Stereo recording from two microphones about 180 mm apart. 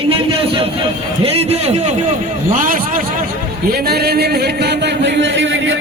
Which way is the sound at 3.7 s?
60° right (ahead or behind).